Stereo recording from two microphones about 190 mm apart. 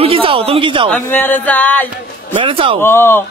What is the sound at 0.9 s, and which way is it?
Speech, 10° left (ahead or behind).